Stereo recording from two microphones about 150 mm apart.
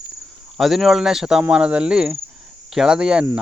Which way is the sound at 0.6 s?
Centre (ahead or behind).